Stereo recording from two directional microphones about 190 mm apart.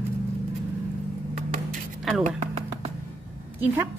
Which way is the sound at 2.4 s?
35° right (ahead or behind).